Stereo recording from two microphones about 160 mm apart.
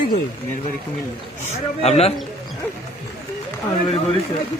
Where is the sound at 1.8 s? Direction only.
40° left (ahead or behind).